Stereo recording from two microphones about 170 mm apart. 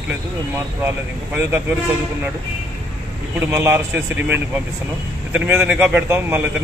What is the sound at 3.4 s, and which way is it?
Speech, 15° right (ahead or behind).